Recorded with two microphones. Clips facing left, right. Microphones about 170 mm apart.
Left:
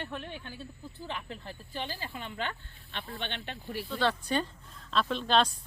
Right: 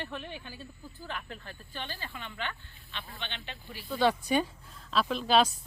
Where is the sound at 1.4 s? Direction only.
30° left (ahead or behind).